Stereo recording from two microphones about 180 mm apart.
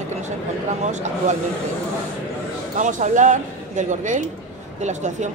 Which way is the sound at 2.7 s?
45° right (ahead or behind).